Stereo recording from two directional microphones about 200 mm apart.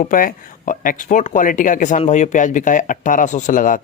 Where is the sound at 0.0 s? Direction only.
45° left (ahead or behind).